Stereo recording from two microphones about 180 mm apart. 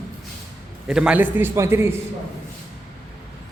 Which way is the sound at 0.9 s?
5° right (ahead or behind).